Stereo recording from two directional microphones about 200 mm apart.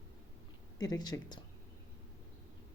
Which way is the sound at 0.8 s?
20° left (ahead or behind).